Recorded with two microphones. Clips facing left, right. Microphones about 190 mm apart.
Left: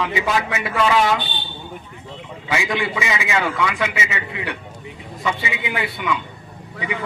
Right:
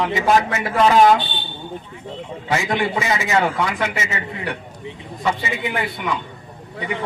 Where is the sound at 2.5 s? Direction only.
50° right (ahead or behind).